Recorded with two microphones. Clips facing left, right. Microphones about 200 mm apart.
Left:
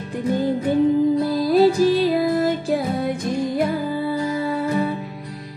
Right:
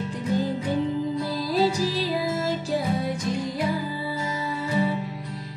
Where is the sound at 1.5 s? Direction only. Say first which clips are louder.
Left 8 dB; 55° left (ahead or behind).